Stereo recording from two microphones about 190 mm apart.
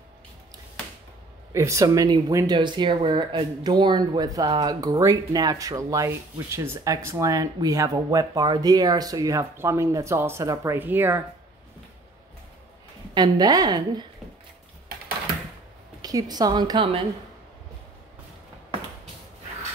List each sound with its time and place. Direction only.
1.5 s speech: 15° right (ahead or behind)
13.1 s a woman's voice: 20° right (ahead or behind)
16.0 s a woman's voice: 20° right (ahead or behind)